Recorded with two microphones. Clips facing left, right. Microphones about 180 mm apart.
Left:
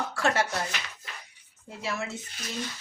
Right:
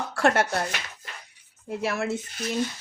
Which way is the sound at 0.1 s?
60° right (ahead or behind).